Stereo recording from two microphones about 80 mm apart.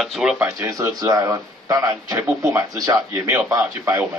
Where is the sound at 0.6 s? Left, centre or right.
Right.